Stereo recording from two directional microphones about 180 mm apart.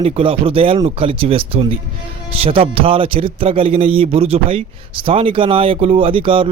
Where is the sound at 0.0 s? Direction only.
30° right (ahead or behind).